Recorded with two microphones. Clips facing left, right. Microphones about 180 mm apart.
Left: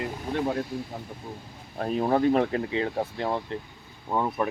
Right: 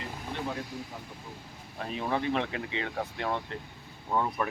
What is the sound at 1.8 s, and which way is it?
Speech, 40° left (ahead or behind).